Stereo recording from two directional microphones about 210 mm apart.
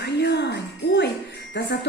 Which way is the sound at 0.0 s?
55° left (ahead or behind).